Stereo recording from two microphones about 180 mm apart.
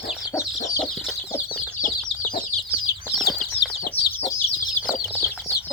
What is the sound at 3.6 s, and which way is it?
Chicken, 65° left (ahead or behind).